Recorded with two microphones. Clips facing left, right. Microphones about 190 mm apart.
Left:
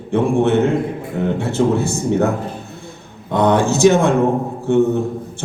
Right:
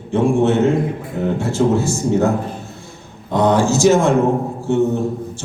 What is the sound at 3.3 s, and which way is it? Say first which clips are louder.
A man's voice: even; 60° left (ahead or behind).